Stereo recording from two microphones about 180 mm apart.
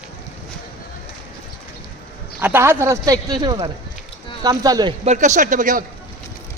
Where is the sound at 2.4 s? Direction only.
10° right (ahead or behind).